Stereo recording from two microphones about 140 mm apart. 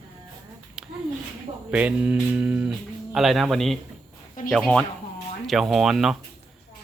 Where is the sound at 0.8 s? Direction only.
5° right (ahead or behind).